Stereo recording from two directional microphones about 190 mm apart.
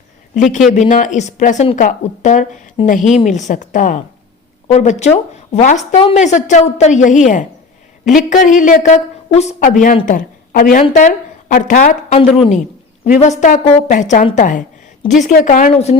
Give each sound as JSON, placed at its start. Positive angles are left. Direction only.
{"t": 0.7, "sound": "a woman's voice", "side_deg": 40}
{"t": 15.7, "sound": "a woman's voice", "side_deg": 35}